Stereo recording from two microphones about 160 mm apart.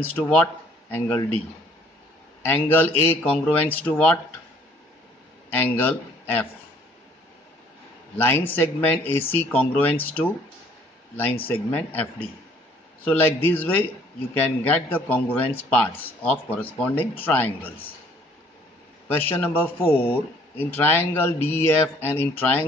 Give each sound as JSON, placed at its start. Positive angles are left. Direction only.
{"t": 0.0, "sound": "speech", "side_deg": 10}
{"t": 2.4, "sound": "speech", "side_deg": 10}
{"t": 5.5, "sound": "a man's voice", "side_deg": 10}
{"t": 8.2, "sound": "speech", "side_deg": 10}
{"t": 11.4, "sound": "speech", "side_deg": 10}
{"t": 19.0, "sound": "speech", "side_deg": 10}